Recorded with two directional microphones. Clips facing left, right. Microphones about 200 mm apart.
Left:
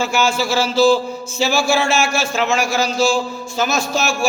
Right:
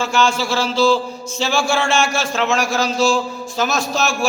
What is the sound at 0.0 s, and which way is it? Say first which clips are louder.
A man's voice: even; 5° left (ahead or behind).